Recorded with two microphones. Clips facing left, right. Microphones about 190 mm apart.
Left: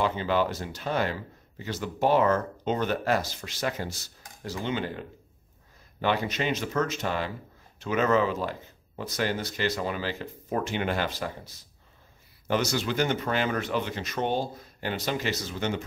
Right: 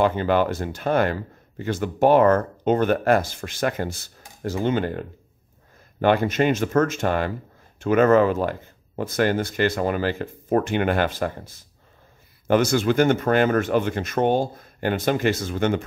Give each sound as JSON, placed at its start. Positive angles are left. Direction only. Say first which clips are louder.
{"t": 0.0, "sound": "speech", "louder": "right 6 dB", "side_deg": -55}